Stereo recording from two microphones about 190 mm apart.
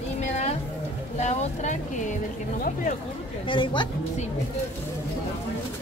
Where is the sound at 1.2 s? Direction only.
35° left (ahead or behind).